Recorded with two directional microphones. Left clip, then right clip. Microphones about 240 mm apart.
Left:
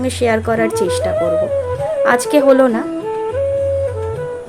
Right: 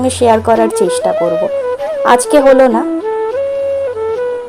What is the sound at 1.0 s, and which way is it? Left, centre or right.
Speech, right.